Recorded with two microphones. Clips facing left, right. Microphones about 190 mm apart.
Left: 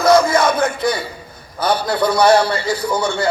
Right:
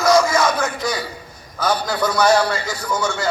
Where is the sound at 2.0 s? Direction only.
30° left (ahead or behind).